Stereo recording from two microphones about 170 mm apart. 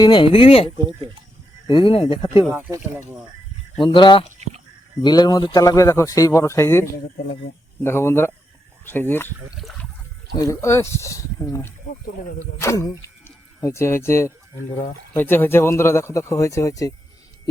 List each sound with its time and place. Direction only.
0.0 s speech: 30° left (ahead or behind)
0.9 s speech: 30° right (ahead or behind)
1.6 s speech: 30° left (ahead or behind)
2.5 s speech: 15° right (ahead or behind)
3.8 s speech: 30° left (ahead or behind)
7.9 s speech: 15° left (ahead or behind)
9.6 s water: centre (ahead or behind)
10.4 s speech: 15° left (ahead or behind)